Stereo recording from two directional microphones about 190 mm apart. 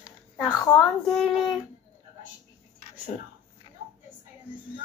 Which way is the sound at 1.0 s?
Centre (ahead or behind).